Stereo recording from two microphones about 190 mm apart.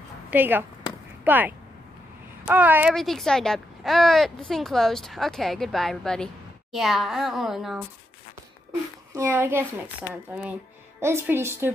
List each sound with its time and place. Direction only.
0.3 s a woman's voice: 10° right (ahead or behind)
2.9 s speech: centre (ahead or behind)
9.1 s a woman's voice: 10° right (ahead or behind)
11.0 s a woman's voice: 15° right (ahead or behind)